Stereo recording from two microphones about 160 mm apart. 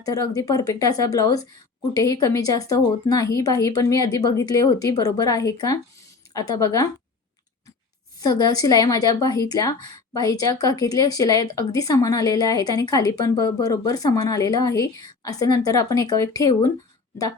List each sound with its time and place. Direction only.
0.0 s a woman's voice: 20° left (ahead or behind)
8.2 s a woman's voice: 25° left (ahead or behind)